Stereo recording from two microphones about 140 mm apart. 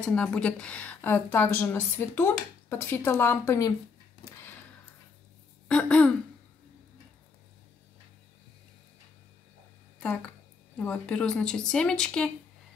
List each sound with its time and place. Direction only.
0.0 s a woman's voice: 10° left (ahead or behind)
4.2 s a sound: 15° left (ahead or behind)
5.7 s a woman's voice: 10° left (ahead or behind)
10.8 s a woman's voice: 5° left (ahead or behind)